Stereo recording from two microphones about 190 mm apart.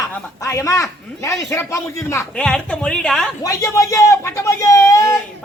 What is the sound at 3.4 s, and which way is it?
Speech, 15° left (ahead or behind).